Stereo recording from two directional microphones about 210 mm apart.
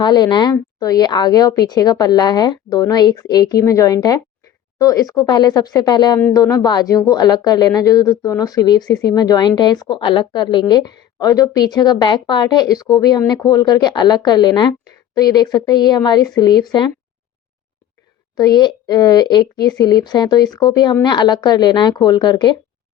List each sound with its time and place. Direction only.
0.0 s a woman's voice: 20° left (ahead or behind)
18.3 s a woman's voice: 20° left (ahead or behind)